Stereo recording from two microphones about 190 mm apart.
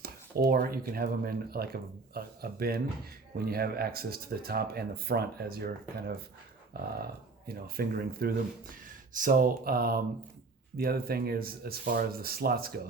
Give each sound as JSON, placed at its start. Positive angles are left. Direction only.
{"t": 0.0, "sound": "speech", "side_deg": -55}
{"t": 6.8, "sound": "a sound", "side_deg": -55}
{"t": 7.4, "sound": "speech", "side_deg": -55}